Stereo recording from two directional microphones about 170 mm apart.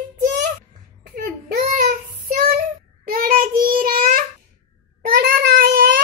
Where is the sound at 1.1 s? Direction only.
55° right (ahead or behind).